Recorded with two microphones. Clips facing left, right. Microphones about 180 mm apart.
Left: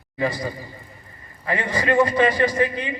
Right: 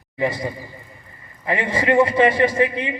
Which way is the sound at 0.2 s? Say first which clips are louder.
Right 2 dB; 25° right (ahead or behind).